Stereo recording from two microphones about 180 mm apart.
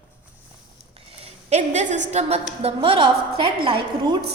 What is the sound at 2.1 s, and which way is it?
A woman's voice, 35° right (ahead or behind).